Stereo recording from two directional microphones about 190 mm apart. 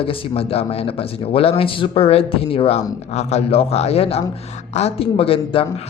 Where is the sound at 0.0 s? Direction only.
30° left (ahead or behind).